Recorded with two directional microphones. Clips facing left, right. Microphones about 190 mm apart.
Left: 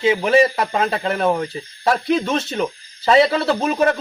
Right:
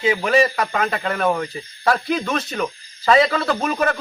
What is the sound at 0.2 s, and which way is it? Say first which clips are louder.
A man's voice: left 2 dB; 25° left (ahead or behind).